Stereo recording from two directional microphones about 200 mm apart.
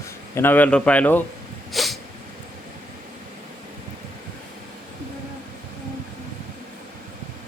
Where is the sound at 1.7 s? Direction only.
Centre (ahead or behind).